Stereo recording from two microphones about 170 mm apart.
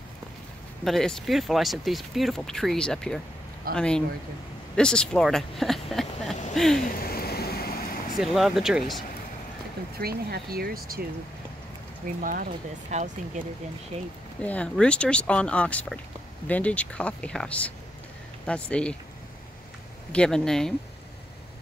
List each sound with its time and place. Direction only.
0.8 s speech: centre (ahead or behind)
6.5 s a sound: centre (ahead or behind)
7.0 s a sound: 65° left (ahead or behind)
8.2 s speech: centre (ahead or behind)
9.9 s speech: 65° right (ahead or behind)
12.2 s speech: 55° right (ahead or behind)
12.9 s speech: 45° right (ahead or behind)
14.4 s speech: 10° left (ahead or behind)
20.1 s speech: 5° left (ahead or behind)